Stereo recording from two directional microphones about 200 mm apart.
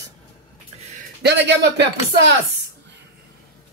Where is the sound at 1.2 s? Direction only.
60° right (ahead or behind).